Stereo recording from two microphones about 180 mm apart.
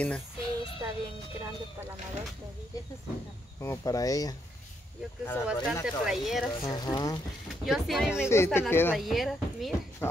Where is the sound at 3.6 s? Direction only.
15° left (ahead or behind).